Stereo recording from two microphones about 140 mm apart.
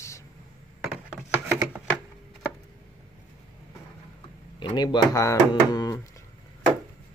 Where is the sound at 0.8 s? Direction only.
10° right (ahead or behind).